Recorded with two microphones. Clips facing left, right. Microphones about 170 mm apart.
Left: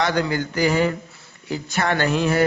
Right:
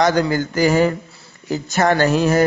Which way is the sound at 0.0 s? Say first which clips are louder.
Right 5 dB; 40° right (ahead or behind).